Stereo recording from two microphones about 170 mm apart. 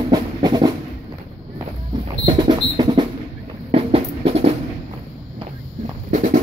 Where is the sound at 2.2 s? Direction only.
25° right (ahead or behind).